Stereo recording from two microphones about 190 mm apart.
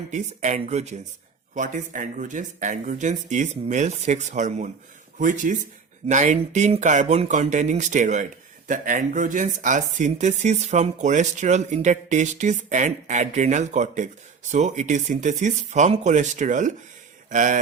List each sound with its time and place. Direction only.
0.1 s speech: 40° right (ahead or behind)